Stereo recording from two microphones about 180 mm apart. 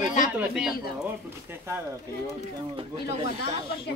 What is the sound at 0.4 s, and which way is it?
Speech, 5° right (ahead or behind).